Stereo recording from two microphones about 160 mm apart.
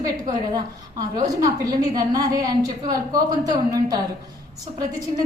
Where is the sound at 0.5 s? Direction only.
25° right (ahead or behind).